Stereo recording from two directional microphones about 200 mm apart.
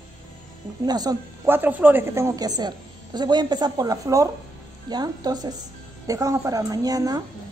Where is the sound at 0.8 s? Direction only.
20° right (ahead or behind).